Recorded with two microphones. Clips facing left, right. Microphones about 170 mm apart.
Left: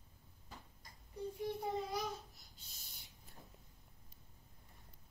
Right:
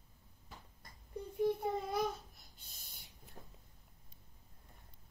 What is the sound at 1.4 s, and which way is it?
Child singing, 55° right (ahead or behind).